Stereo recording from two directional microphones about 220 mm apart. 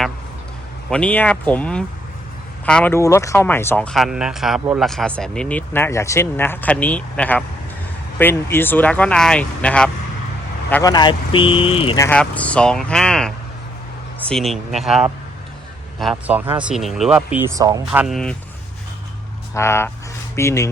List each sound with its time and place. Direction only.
0.9 s speech: 5° left (ahead or behind)
10.9 s speech: 20° left (ahead or behind)
11.9 s a man's voice: 10° left (ahead or behind); by 18.0 s 15° right (ahead or behind)
18.0 s speech: centre (ahead or behind)
19.5 s speech: 10° left (ahead or behind)